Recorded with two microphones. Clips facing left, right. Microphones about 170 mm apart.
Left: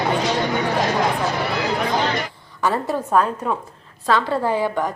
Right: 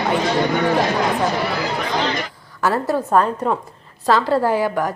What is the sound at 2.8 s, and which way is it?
Speech, centre (ahead or behind).